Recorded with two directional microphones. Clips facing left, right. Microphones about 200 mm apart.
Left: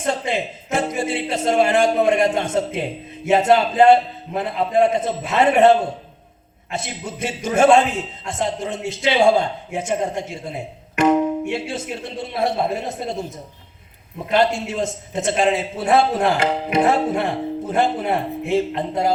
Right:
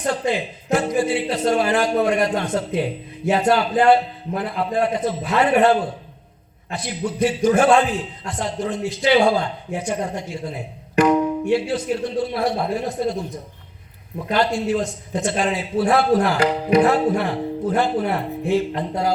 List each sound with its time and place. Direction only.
0.0 s a man's voice: 25° left (ahead or behind)